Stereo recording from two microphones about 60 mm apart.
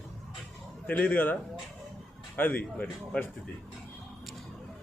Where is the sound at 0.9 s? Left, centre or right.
Left.